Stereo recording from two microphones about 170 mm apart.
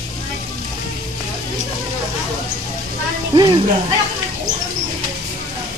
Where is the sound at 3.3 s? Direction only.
25° right (ahead or behind).